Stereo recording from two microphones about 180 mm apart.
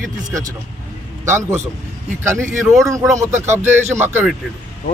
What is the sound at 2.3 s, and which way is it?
Speech, 15° right (ahead or behind).